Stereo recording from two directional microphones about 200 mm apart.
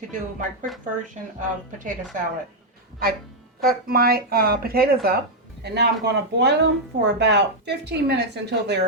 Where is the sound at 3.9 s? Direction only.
50° right (ahead or behind).